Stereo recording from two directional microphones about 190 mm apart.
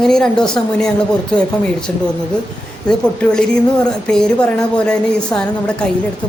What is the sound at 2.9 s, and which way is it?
Speech, 5° left (ahead or behind).